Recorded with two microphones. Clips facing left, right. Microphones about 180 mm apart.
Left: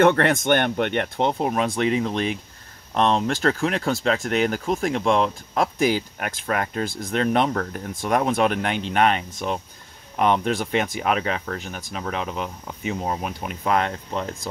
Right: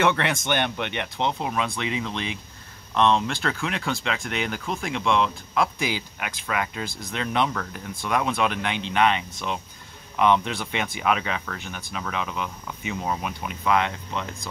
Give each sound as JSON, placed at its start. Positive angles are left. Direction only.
{"t": 0.0, "sound": "speech", "side_deg": 50}